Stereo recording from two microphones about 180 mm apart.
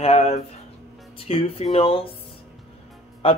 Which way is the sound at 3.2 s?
30° left (ahead or behind).